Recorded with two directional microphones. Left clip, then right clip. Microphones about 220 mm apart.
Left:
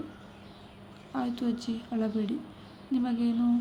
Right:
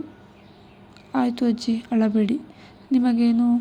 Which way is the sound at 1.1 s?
35° right (ahead or behind).